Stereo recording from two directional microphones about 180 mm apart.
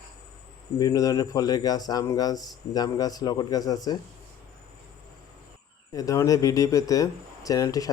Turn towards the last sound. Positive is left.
turn(degrees=20)  # may be behind; listen again after turning